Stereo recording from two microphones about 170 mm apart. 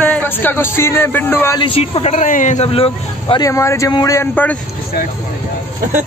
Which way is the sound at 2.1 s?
50° left (ahead or behind).